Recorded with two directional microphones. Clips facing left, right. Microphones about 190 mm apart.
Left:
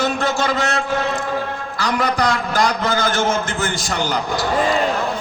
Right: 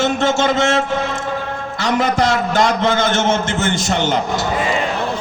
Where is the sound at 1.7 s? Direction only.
25° right (ahead or behind).